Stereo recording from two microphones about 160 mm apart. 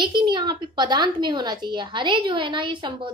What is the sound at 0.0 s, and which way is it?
Speech, 30° right (ahead or behind).